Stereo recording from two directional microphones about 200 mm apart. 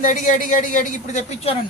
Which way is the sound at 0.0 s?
40° left (ahead or behind).